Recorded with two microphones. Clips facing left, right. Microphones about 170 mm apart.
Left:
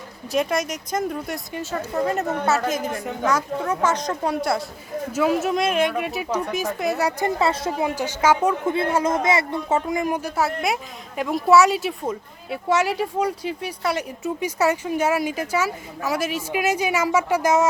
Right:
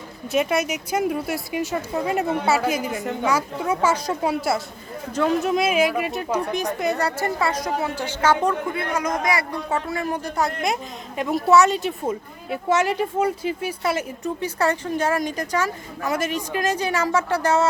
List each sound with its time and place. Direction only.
0.3 s speech: 5° right (ahead or behind)
5.1 s speech: 5° left (ahead or behind)
7.2 s speech: 20° left (ahead or behind)
7.9 s speech: 10° left (ahead or behind)
8.7 s speech: 25° left (ahead or behind); by 14.3 s centre (ahead or behind)
14.4 s speech: 10° left (ahead or behind)